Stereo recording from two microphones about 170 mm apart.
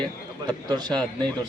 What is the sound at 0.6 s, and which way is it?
Speech, 25° right (ahead or behind).